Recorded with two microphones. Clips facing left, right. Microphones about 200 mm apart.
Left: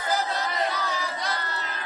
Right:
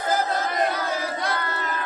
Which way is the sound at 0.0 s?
45° right (ahead or behind).